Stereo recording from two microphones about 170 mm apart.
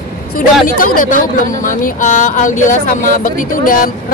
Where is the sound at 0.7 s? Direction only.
55° left (ahead or behind).